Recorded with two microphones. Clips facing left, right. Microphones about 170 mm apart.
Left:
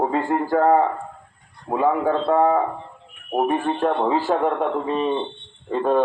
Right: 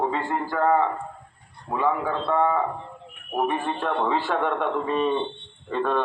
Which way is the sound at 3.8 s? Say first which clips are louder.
Left 4 dB; 30° left (ahead or behind).